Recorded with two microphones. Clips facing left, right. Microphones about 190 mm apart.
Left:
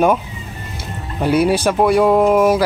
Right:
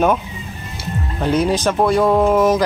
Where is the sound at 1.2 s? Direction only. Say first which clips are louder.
Left 2 dB; 10° left (ahead or behind).